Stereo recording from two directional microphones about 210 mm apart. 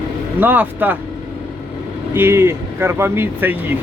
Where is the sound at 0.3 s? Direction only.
10° right (ahead or behind).